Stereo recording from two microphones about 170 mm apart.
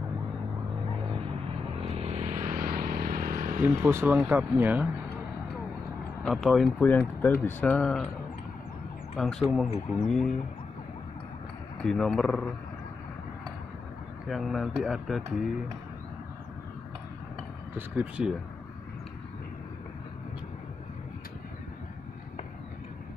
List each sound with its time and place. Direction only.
2.0 s vehicle: 40° right (ahead or behind)
3.6 s speech: 10° right (ahead or behind)
6.2 s speech: centre (ahead or behind)
9.1 s speech: centre (ahead or behind)
11.8 s speech: 5° left (ahead or behind)
14.2 s speech: centre (ahead or behind)
17.7 s speech: 10° right (ahead or behind)